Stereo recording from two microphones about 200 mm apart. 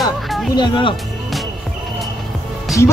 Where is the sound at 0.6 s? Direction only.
25° left (ahead or behind).